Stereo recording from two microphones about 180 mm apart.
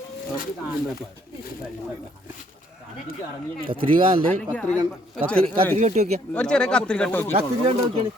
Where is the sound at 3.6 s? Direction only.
30° right (ahead or behind).